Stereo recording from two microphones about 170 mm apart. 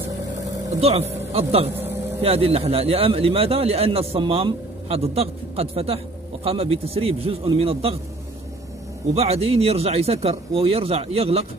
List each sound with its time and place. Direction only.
0.7 s a man's voice: 35° right (ahead or behind)
1.7 s vehicle: 10° right (ahead or behind)
2.2 s a man's voice: 35° right (ahead or behind)
9.1 s a man's voice: 35° right (ahead or behind)